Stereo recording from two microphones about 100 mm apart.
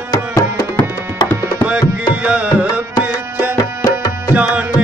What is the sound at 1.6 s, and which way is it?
Music, 15° right (ahead or behind).